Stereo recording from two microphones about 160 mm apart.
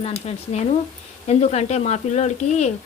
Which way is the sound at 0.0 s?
40° left (ahead or behind).